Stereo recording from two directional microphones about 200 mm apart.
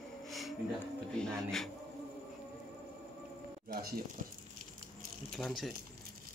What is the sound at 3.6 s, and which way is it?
Speech, 50° right (ahead or behind).